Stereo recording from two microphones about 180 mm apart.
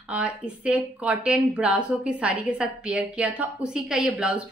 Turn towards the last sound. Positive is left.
turn(degrees=-5)  # may be behind; listen again after turning